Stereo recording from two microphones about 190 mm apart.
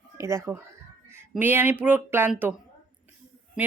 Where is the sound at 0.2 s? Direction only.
15° right (ahead or behind).